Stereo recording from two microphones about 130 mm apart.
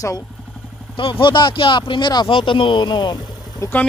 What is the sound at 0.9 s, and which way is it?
Speech, 40° left (ahead or behind).